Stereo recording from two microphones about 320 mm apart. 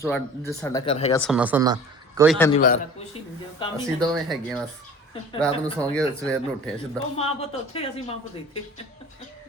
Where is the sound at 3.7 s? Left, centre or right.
Centre.